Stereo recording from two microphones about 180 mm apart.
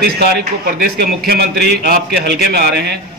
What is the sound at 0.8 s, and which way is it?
A man's voice, 60° right (ahead or behind).